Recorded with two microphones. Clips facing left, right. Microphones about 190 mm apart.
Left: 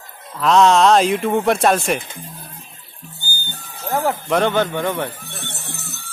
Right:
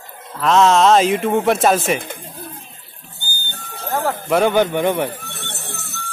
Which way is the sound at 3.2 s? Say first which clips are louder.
Right 1 dB; 60° right (ahead or behind).